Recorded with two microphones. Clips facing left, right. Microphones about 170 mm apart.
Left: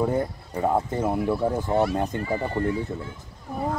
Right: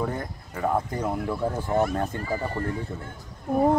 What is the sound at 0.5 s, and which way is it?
Speech, 25° left (ahead or behind).